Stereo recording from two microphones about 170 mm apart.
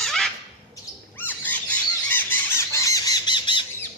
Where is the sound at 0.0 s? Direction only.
Centre (ahead or behind).